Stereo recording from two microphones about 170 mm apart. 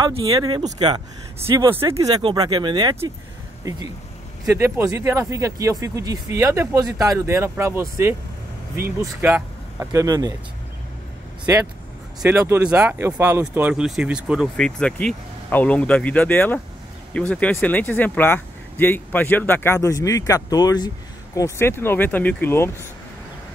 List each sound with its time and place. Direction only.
0.3 s speech: 25° right (ahead or behind)
12.2 s speech: 10° right (ahead or behind); by 22.8 s 15° left (ahead or behind)